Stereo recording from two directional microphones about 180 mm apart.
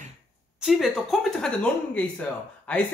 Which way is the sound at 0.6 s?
Centre (ahead or behind).